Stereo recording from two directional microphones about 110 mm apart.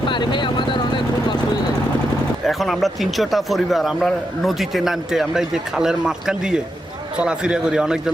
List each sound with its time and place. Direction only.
0.1 s vehicle: 45° left (ahead or behind)
2.5 s a man's voice: centre (ahead or behind)